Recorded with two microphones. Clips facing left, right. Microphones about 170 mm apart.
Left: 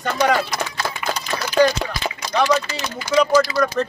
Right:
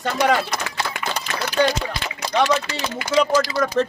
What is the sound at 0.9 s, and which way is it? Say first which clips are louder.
Run: left 1 dB; 70° right (ahead or behind).